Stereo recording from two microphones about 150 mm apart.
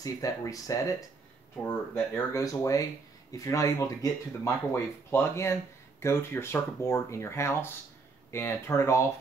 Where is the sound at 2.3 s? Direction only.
20° left (ahead or behind).